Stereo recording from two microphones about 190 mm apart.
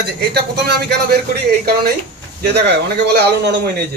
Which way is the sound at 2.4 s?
60° right (ahead or behind).